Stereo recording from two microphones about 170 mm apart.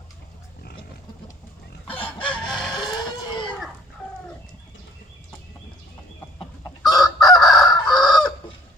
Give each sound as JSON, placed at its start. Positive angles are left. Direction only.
{"t": 2.0, "sound": "chicken", "side_deg": 10}
{"t": 2.7, "sound": "goat", "side_deg": 25}
{"t": 6.4, "sound": "chicken", "side_deg": 25}
{"t": 7.6, "sound": "fowl", "side_deg": 0}